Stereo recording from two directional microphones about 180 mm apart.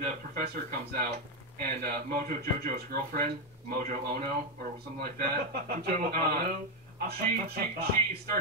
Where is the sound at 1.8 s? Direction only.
55° right (ahead or behind).